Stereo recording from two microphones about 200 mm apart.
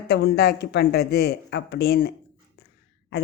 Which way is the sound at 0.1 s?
55° left (ahead or behind).